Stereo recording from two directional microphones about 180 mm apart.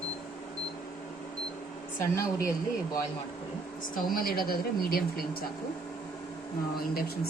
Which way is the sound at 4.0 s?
50° left (ahead or behind).